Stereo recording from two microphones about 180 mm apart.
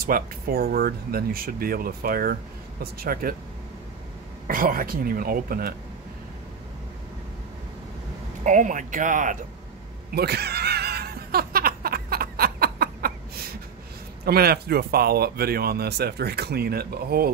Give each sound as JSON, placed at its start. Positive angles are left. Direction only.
{"t": 0.0, "sound": "speech", "side_deg": -55}
{"t": 4.5, "sound": "speech", "side_deg": -50}
{"t": 8.5, "sound": "speech", "side_deg": -45}
{"t": 10.1, "sound": "a sound", "side_deg": -65}
{"t": 14.2, "sound": "speech", "side_deg": -60}